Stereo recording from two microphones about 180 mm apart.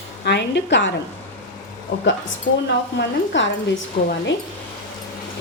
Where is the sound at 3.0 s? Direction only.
90° left.